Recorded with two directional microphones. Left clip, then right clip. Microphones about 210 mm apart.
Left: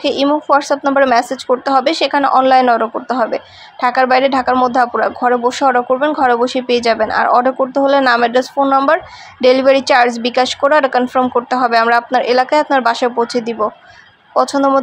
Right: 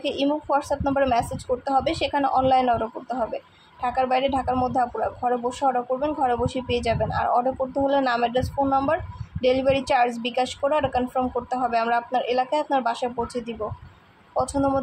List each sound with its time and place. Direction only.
0.0 s speech: 20° left (ahead or behind)